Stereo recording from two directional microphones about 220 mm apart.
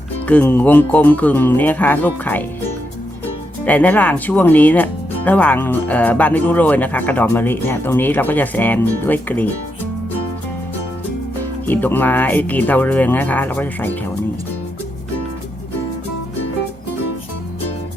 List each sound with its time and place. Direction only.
0.3 s speech: 10° left (ahead or behind)
3.6 s speech: 5° left (ahead or behind)
11.6 s speech: 10° left (ahead or behind)